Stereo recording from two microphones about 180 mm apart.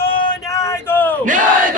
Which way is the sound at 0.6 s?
15° left (ahead or behind).